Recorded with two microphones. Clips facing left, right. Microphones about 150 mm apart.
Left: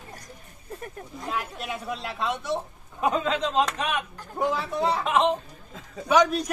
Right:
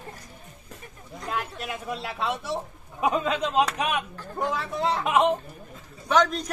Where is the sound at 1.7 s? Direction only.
Centre (ahead or behind).